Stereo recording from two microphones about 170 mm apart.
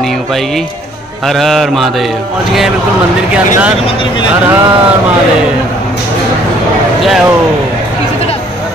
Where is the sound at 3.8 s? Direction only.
30° left (ahead or behind).